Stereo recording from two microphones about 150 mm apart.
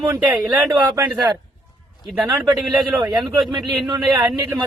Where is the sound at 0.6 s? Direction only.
25° right (ahead or behind).